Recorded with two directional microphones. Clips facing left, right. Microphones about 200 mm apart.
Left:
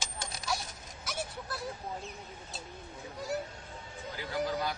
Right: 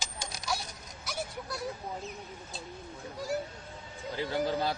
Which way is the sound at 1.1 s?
Centre (ahead or behind).